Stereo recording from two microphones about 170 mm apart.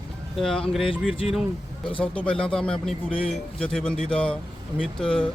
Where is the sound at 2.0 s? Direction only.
5° left (ahead or behind).